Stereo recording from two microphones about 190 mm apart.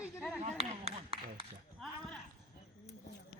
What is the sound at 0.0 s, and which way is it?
Chop, 5° right (ahead or behind).